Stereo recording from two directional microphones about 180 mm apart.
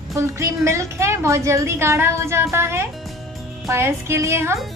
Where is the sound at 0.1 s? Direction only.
15° right (ahead or behind).